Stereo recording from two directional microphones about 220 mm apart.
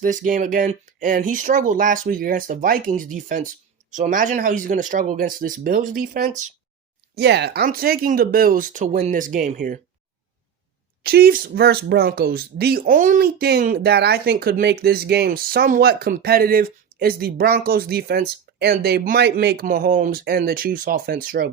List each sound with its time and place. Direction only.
0.0 s speech: 35° right (ahead or behind)
11.0 s speech: 45° right (ahead or behind)